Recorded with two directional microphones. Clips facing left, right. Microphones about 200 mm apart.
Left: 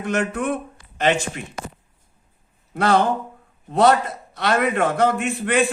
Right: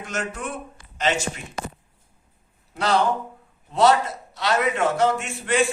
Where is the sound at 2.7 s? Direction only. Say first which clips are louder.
Left 3 dB; 55° left (ahead or behind).